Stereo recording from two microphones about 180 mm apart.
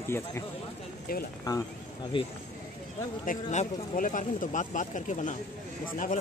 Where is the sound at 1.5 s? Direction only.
20° left (ahead or behind).